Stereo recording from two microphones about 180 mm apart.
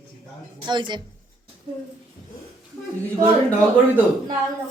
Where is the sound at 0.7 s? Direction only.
25° right (ahead or behind).